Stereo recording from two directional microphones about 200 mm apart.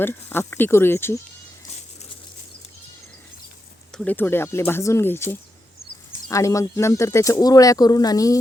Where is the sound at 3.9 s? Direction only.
5° left (ahead or behind).